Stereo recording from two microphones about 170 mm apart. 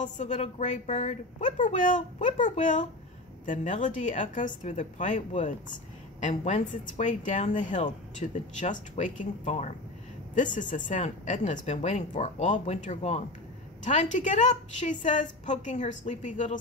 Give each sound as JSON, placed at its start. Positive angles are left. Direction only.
{"t": 0.0, "sound": "speech", "side_deg": 45}